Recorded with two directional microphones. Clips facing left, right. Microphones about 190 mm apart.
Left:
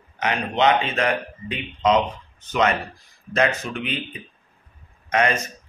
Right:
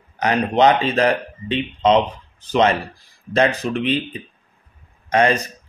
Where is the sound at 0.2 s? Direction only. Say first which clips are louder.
Right 5 dB; 35° right (ahead or behind).